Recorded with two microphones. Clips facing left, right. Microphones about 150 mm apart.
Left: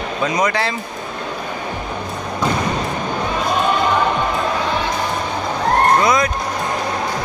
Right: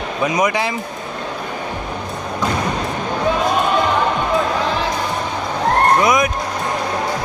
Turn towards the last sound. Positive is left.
turn(degrees=-15)  # may be behind; listen again after turning